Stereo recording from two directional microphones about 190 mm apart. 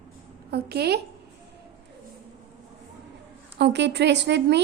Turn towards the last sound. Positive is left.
turn(degrees=-65)  # may be behind; listen again after turning